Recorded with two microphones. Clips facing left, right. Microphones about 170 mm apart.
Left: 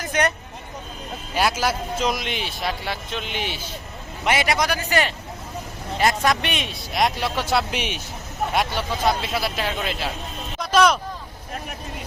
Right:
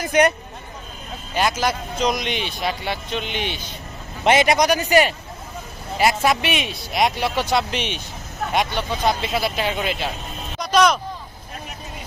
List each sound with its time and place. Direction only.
0.0 s speech: 15° right (ahead or behind)
1.4 s a man's voice: 5° left (ahead or behind)
4.2 s a man's voice: 25° right (ahead or behind); by 10.1 s centre (ahead or behind)
10.6 s music: 5° left (ahead or behind)